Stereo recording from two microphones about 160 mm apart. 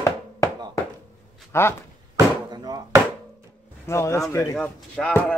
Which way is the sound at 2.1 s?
25° right (ahead or behind).